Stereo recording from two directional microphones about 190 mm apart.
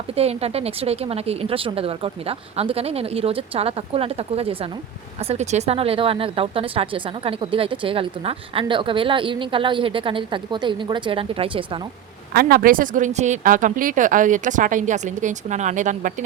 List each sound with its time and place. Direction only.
0.2 s speech: 30° right (ahead or behind)
12.3 s speech: 55° right (ahead or behind)